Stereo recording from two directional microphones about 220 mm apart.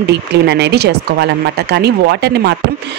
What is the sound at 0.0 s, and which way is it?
Speech, 50° right (ahead or behind).